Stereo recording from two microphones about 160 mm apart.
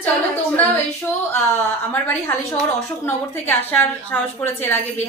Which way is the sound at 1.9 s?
10° left (ahead or behind).